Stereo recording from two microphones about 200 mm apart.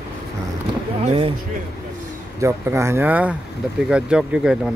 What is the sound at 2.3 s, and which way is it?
Speech, 15° right (ahead or behind).